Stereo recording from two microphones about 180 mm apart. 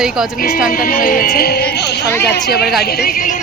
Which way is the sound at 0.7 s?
50° left (ahead or behind).